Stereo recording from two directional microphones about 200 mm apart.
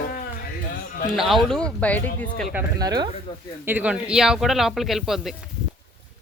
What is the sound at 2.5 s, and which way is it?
Speech, 20° right (ahead or behind).